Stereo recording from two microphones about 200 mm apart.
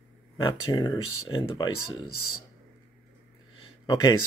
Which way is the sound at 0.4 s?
25° left (ahead or behind).